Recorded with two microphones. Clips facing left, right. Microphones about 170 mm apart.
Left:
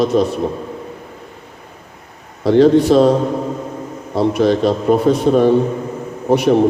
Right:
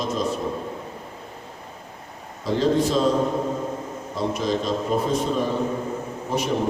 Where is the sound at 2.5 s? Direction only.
70° left (ahead or behind).